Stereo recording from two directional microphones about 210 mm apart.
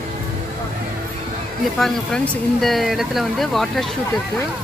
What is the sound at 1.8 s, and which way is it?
Speech, centre (ahead or behind).